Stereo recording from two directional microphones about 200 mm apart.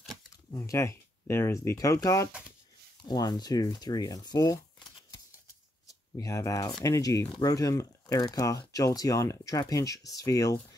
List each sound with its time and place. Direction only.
0.5 s speech: 15° left (ahead or behind)
6.1 s speech: 15° left (ahead or behind)